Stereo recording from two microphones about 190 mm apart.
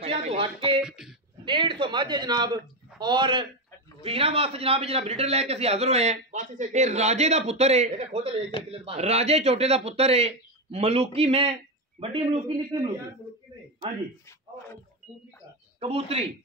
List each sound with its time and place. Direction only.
0.0 s speech: 35° right (ahead or behind)
0.7 s speech: 5° right (ahead or behind)
1.4 s a man's voice: 25° right (ahead or behind)
15.8 s a man's voice: 30° right (ahead or behind)